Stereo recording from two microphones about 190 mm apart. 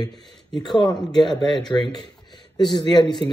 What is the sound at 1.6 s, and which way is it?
Speech, 5° left (ahead or behind).